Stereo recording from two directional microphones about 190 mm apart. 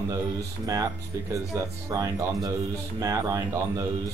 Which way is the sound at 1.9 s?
15° right (ahead or behind).